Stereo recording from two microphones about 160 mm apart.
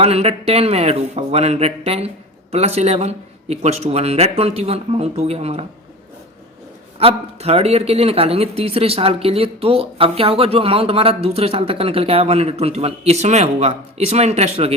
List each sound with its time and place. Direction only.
0.0 s speech: 40° right (ahead or behind)
7.0 s speech: 40° right (ahead or behind)